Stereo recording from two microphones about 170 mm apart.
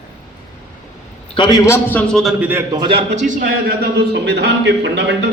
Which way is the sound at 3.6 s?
70° right (ahead or behind).